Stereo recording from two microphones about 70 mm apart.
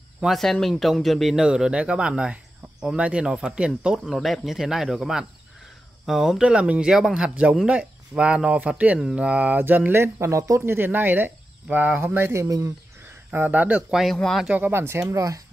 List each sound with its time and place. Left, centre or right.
0.2 s speech: centre; by 10.6 s right
10.6 s speech: right
12.4 s speech: right
13.3 s speech: right
14.1 s speech: centre
14.7 s speech: right
15.0 s speech: right